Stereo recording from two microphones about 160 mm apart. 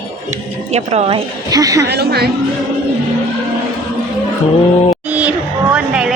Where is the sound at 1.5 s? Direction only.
20° right (ahead or behind).